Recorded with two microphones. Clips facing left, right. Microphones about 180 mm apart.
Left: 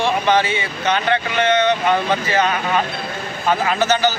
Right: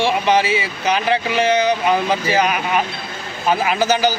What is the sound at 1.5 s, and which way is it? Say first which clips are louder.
Speech: left 1 dB; 10° right (ahead or behind).